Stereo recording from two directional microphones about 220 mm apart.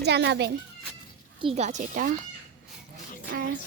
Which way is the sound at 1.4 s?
25° right (ahead or behind).